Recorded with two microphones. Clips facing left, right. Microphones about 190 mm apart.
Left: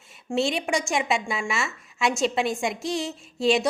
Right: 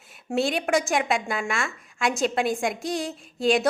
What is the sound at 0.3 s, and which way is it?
A woman's voice, centre (ahead or behind).